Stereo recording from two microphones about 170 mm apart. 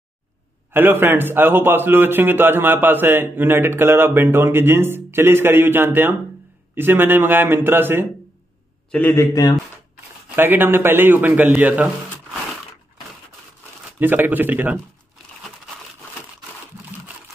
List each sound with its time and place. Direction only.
0.7 s a man's voice: 10° right (ahead or behind)
8.9 s a man's voice: 10° left (ahead or behind)
10.3 s a man's voice: 10° right (ahead or behind)
13.9 s a man's voice: 10° right (ahead or behind)